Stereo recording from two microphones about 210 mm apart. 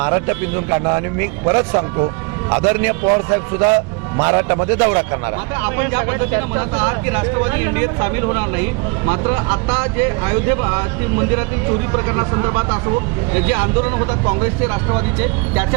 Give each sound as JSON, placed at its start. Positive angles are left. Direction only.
{"t": 0.0, "sound": "a man's voice", "side_deg": -20}
{"t": 11.9, "sound": "a man's voice", "side_deg": -20}